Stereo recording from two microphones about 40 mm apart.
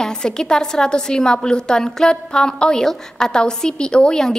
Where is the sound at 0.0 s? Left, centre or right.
Centre.